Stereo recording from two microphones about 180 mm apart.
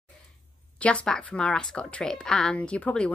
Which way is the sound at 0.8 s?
5° left (ahead or behind).